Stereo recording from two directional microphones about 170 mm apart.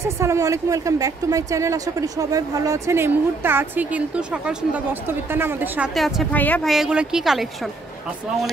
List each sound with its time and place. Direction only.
0.0 s a woman's voice: 15° right (ahead or behind)
5.9 s a woman's voice: centre (ahead or behind)